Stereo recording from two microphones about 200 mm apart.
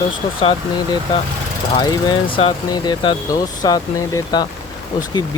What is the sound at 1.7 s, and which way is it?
Speech, 20° left (ahead or behind).